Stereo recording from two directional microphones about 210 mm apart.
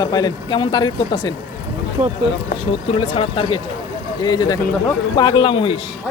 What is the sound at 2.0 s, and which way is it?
Speech, 35° right (ahead or behind).